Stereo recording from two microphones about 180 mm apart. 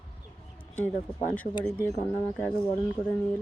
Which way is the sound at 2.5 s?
30° left (ahead or behind).